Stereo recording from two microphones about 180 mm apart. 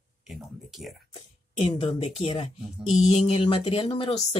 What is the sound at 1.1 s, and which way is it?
A woman's voice, 35° left (ahead or behind).